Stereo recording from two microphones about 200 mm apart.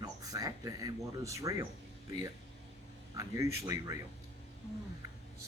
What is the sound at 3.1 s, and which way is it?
Speech, 15° right (ahead or behind).